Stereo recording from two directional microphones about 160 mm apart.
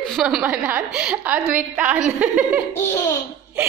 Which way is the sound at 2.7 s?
15° left (ahead or behind).